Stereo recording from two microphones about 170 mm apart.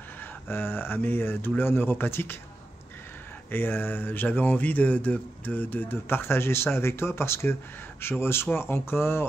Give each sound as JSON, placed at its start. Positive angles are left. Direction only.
{"t": 0.2, "sound": "speech", "side_deg": 15}
{"t": 3.5, "sound": "speech", "side_deg": 10}